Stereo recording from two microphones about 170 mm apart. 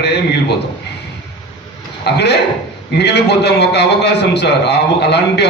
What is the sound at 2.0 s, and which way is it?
A man's voice, 75° left (ahead or behind).